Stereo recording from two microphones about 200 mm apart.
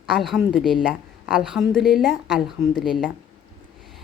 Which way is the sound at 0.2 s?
Centre (ahead or behind).